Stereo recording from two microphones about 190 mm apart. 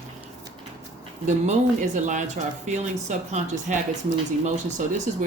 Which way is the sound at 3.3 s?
40° right (ahead or behind).